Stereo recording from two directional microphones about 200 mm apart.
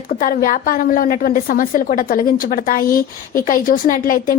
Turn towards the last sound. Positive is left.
turn(degrees=45)  # may be behind; listen again after turning